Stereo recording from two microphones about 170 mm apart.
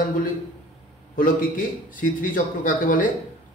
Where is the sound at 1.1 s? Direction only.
55° left (ahead or behind).